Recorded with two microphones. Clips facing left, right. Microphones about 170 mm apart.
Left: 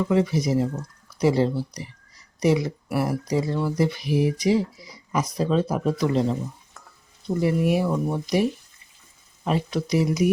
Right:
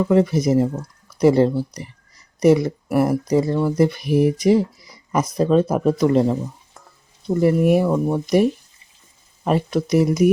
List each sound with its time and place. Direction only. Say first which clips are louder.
0.0 s speech: right 5 dB; 50° right (ahead or behind)
7.4 s speech: right 6 dB; 50° right (ahead or behind)